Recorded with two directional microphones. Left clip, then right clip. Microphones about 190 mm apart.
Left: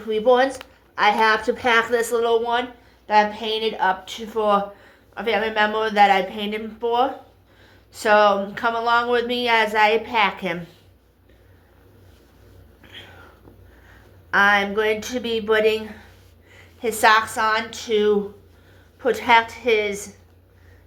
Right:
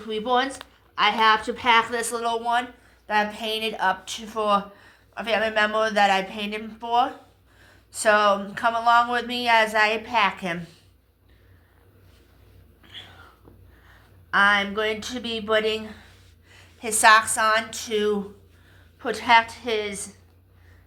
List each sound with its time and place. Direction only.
0.0 s speech: 35° right (ahead or behind)
12.8 s a sound: 30° right (ahead or behind)
14.3 s a woman's voice: 35° right (ahead or behind)